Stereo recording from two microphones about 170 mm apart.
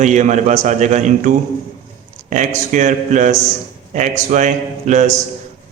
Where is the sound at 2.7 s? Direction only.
45° right (ahead or behind).